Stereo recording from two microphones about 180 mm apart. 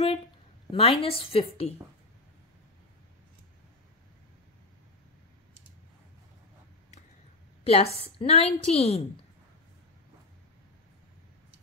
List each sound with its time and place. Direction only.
0.7 s a woman's voice: 35° left (ahead or behind)
7.6 s a woman's voice: 35° left (ahead or behind)